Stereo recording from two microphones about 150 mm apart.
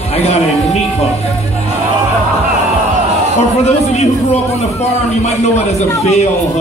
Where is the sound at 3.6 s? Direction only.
45° left (ahead or behind).